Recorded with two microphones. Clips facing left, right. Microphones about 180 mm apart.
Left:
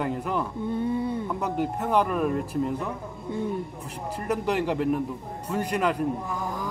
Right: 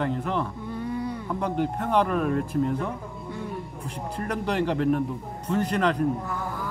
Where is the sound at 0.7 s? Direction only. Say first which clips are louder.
Left 4 dB; 25° left (ahead or behind).